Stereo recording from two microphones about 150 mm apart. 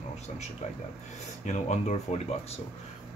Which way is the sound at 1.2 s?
50° left (ahead or behind).